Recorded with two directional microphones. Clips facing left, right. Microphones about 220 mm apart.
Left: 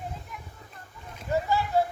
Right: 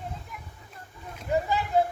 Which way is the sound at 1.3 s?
20° right (ahead or behind).